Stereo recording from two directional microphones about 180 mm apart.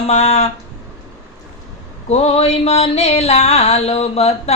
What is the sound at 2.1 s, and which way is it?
Speech, 35° left (ahead or behind).